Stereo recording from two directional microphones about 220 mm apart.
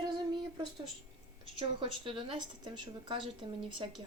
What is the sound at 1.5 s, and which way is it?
Speech, 25° right (ahead or behind).